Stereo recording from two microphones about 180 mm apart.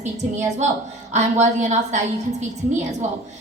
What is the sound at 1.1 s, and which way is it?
Speech, 40° right (ahead or behind).